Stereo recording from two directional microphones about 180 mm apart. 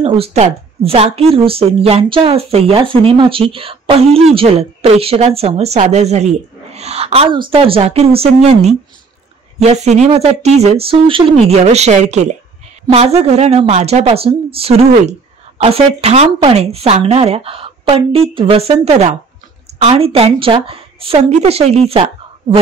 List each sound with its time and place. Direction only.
0.0 s speech: 35° right (ahead or behind)